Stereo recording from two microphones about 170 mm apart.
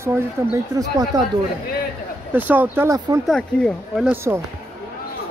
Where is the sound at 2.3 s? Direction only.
10° right (ahead or behind).